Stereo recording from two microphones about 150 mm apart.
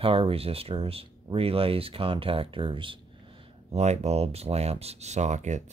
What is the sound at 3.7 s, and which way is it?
Speech, 45° right (ahead or behind).